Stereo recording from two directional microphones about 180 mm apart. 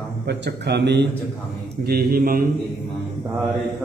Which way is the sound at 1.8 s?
60° right (ahead or behind).